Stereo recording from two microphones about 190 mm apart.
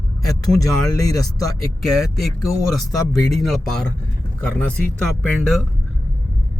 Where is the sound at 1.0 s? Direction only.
20° left (ahead or behind).